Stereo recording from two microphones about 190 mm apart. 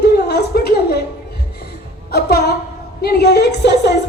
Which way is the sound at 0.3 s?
55° left (ahead or behind).